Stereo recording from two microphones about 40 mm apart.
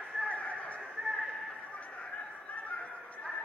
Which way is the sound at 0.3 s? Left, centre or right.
Left.